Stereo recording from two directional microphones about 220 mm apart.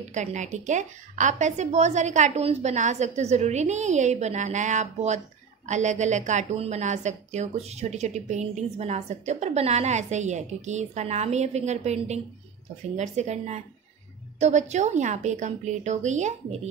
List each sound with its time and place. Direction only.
0.1 s a woman's voice: 35° right (ahead or behind)